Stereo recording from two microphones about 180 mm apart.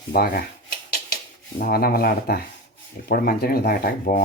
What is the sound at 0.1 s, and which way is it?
Speech, 60° left (ahead or behind).